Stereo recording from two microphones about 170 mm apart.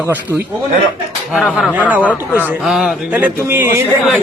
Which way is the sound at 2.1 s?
10° left (ahead or behind).